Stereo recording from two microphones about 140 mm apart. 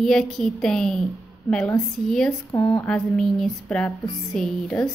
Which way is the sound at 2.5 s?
20° left (ahead or behind).